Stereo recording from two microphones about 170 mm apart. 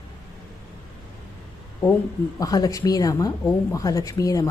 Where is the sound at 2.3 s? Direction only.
20° left (ahead or behind).